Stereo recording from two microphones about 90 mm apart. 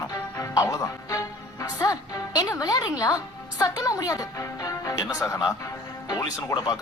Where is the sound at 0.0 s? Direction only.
40° left (ahead or behind).